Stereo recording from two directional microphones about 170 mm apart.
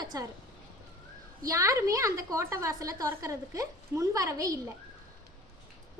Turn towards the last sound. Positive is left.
turn(degrees=-20)  # may be behind; listen again after turning